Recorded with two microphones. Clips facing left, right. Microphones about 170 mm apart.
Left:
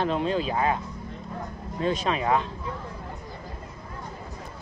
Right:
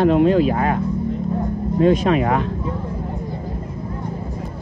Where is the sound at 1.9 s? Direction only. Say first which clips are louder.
Right 4 dB; 50° right (ahead or behind).